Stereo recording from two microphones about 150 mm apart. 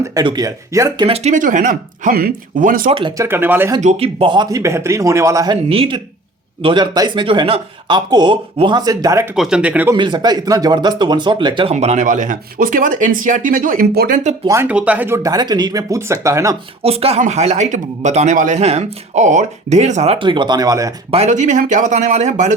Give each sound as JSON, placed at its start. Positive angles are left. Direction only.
{"t": 0.0, "sound": "speech", "side_deg": -25}
{"t": 1.0, "sound": "speech", "side_deg": -45}
{"t": 3.2, "sound": "speech", "side_deg": -15}
{"t": 3.8, "sound": "speech", "side_deg": -45}
{"t": 4.6, "sound": "speech", "side_deg": -20}
{"t": 5.6, "sound": "speech", "side_deg": -40}
{"t": 9.3, "sound": "speech", "side_deg": -5}
{"t": 9.9, "sound": "speech", "side_deg": -30}
{"t": 11.7, "sound": "speech", "side_deg": -45}
{"t": 14.4, "sound": "speech", "side_deg": -20}
{"t": 14.7, "sound": "speech", "side_deg": -10}
{"t": 16.8, "sound": "speech", "side_deg": -40}
{"t": 21.1, "sound": "speech", "side_deg": -50}